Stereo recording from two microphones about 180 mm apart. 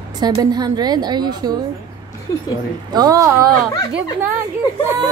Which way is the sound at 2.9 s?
20° right (ahead or behind).